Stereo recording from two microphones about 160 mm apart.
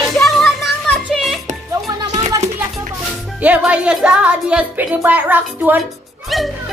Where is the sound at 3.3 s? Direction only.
10° right (ahead or behind).